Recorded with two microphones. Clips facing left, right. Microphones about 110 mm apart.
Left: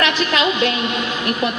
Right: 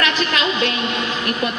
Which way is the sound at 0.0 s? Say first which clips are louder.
Left 2 dB; 25° left (ahead or behind).